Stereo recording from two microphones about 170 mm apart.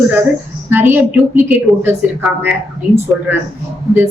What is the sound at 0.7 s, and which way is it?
A woman's voice, 10° right (ahead or behind).